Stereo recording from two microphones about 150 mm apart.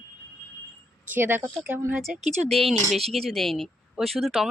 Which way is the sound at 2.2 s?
50° right (ahead or behind).